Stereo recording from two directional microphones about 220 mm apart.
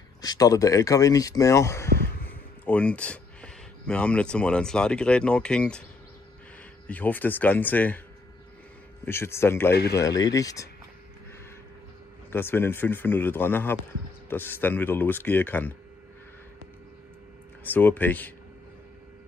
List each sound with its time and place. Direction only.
0.2 s speech: 15° left (ahead or behind)
6.9 s speech: 10° left (ahead or behind)
9.0 s speech: 10° left (ahead or behind)
12.3 s speech: 10° left (ahead or behind)
17.6 s speech: 10° left (ahead or behind)